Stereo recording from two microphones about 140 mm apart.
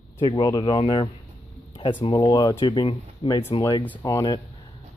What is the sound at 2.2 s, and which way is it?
Speech, 25° left (ahead or behind).